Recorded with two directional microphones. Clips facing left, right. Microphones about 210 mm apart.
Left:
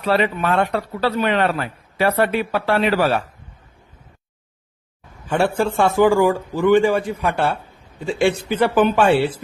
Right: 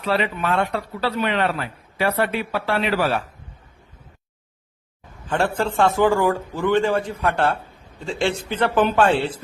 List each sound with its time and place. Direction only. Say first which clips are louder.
0.0 s a man's voice: left 4 dB; 45° left (ahead or behind)
5.3 s a man's voice: left 3 dB; 10° left (ahead or behind)